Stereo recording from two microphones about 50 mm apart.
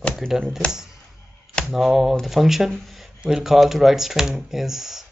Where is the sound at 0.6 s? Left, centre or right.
Left.